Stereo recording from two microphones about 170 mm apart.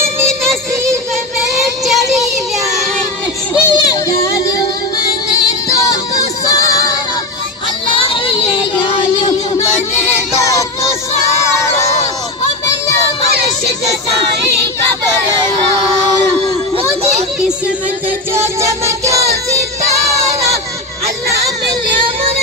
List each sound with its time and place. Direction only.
1.8 s child singing: centre (ahead or behind)
3.6 s a sound: 15° left (ahead or behind)
5.4 s music: 20° left (ahead or behind)
7.9 s child singing: 30° left (ahead or behind)
10.3 s music: 20° left (ahead or behind)
18.3 s music: 15° right (ahead or behind)
21.4 s music: 20° right (ahead or behind)